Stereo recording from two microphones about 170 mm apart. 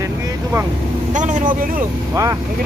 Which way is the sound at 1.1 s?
50° right (ahead or behind).